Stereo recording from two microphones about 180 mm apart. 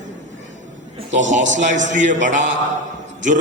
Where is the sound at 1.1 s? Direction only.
45° right (ahead or behind).